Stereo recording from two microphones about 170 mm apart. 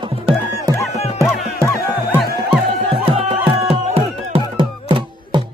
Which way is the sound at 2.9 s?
35° right (ahead or behind).